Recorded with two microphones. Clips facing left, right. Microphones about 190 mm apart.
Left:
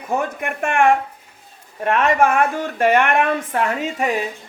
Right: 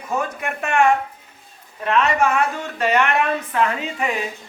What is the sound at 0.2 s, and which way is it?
Speech, 55° left (ahead or behind).